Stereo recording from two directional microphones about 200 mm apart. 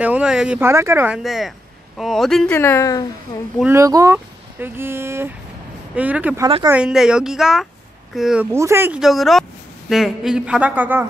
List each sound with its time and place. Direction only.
0.0 s speech: 5° right (ahead or behind); by 3.1 s 15° left (ahead or behind)
3.5 s speech: 10° right (ahead or behind)
6.4 s speech: 20° right (ahead or behind)
6.7 s speech: 5° right (ahead or behind)